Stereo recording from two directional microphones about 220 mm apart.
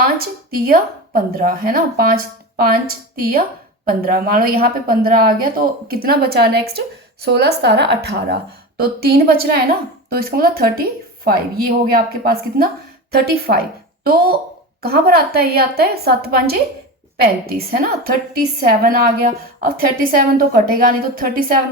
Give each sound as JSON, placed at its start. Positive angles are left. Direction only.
{"t": 0.0, "sound": "a woman's voice", "side_deg": -40}